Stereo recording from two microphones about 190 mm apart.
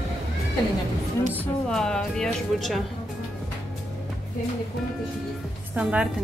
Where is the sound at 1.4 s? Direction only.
5° left (ahead or behind).